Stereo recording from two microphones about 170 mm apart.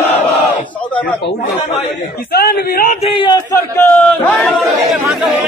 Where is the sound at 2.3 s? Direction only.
65° left (ahead or behind).